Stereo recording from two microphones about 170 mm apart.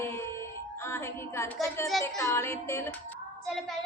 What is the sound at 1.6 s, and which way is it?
Speech, 20° left (ahead or behind).